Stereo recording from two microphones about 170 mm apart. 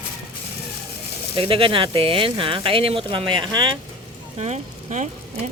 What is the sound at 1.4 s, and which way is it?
Speech, 30° right (ahead or behind).